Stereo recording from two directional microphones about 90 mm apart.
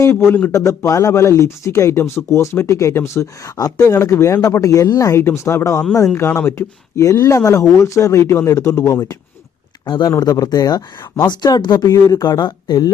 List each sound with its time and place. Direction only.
0.3 s a man's voice: 20° left (ahead or behind)
0.5 s speech: 35° left (ahead or behind)
9.8 s speech: 55° left (ahead or behind)
11.9 s speech: 45° left (ahead or behind)